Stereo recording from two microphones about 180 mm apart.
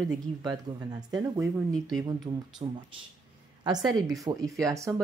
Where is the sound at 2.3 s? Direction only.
25° right (ahead or behind).